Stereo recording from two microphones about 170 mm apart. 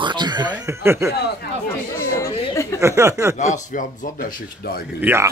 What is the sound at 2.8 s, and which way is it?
Speech, 15° right (ahead or behind).